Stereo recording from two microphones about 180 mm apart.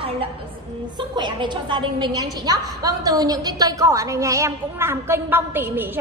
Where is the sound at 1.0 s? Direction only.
25° right (ahead or behind).